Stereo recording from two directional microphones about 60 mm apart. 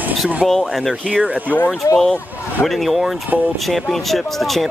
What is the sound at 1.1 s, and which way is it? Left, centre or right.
Speech, centre.